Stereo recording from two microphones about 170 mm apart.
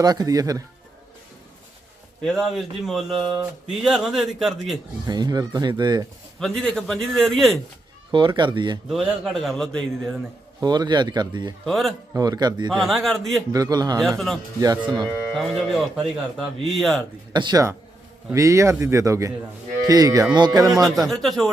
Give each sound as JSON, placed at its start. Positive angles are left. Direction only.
{"t": 0.0, "sound": "speech", "side_deg": -25}
{"t": 2.2, "sound": "speech", "side_deg": 0}
{"t": 5.0, "sound": "speech", "side_deg": -25}
{"t": 6.4, "sound": "speech", "side_deg": 5}
{"t": 8.1, "sound": "speech", "side_deg": -30}
{"t": 8.9, "sound": "speech", "side_deg": 0}
{"t": 10.6, "sound": "speech", "side_deg": -25}
{"t": 11.6, "sound": "speech", "side_deg": 0}
{"t": 12.1, "sound": "speech", "side_deg": -20}
{"t": 12.8, "sound": "speech", "side_deg": 0}
{"t": 13.5, "sound": "speech", "side_deg": -20}
{"t": 15.3, "sound": "speech", "side_deg": 0}
{"t": 17.3, "sound": "speech", "side_deg": -25}
{"t": 20.8, "sound": "speech", "side_deg": 0}